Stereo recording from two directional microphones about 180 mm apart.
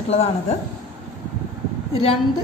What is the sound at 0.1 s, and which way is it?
Speech, 35° left (ahead or behind).